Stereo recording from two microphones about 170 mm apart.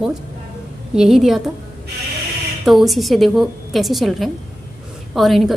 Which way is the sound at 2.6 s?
Centre (ahead or behind).